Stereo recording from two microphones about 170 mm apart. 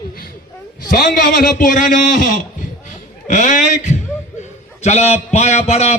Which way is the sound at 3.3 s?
45° left (ahead or behind).